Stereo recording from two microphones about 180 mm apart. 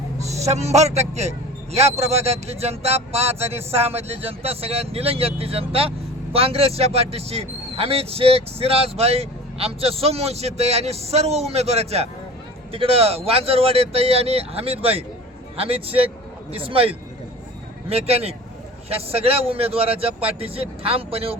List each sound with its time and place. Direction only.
0.3 s a man's voice: 40° right (ahead or behind)